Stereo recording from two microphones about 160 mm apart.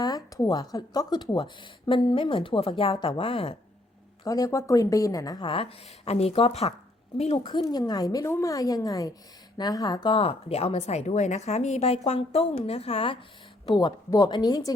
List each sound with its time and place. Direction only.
0.0 s a woman's voice: 20° left (ahead or behind)
4.2 s a woman's voice: 20° left (ahead or behind); by 7.6 s 40° left (ahead or behind)
7.6 s a woman's voice: 25° left (ahead or behind)
13.7 s a woman's voice: 25° left (ahead or behind)